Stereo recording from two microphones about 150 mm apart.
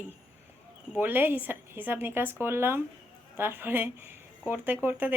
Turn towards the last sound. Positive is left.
turn(degrees=-15)  # may be behind; listen again after turning